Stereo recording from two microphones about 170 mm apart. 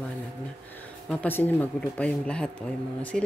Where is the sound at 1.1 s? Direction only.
10° left (ahead or behind).